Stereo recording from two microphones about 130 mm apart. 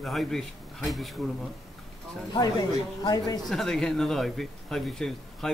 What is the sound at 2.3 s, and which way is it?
Speech, 30° left (ahead or behind).